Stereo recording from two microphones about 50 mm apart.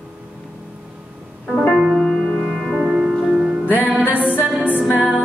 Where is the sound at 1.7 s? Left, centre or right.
Centre.